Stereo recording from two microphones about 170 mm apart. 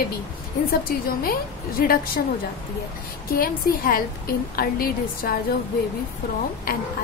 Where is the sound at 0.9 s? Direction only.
60° left (ahead or behind).